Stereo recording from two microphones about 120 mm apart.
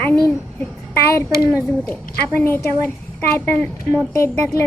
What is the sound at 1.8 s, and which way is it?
A woman's voice, 15° left (ahead or behind).